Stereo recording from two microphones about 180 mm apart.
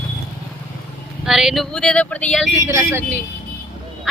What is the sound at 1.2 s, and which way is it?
Speech, centre (ahead or behind).